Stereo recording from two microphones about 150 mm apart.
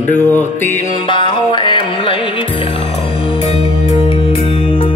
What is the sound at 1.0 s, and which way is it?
Music, 35° left (ahead or behind).